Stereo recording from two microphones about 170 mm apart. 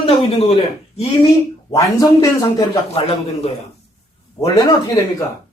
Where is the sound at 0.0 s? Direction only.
35° left (ahead or behind).